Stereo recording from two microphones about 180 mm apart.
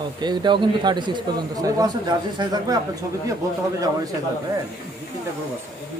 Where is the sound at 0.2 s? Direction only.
25° right (ahead or behind).